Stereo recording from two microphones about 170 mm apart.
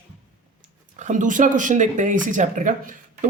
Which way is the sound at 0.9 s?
45° right (ahead or behind).